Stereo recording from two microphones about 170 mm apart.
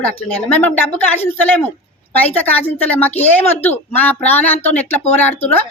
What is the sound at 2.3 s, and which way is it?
A woman's voice, 10° left (ahead or behind).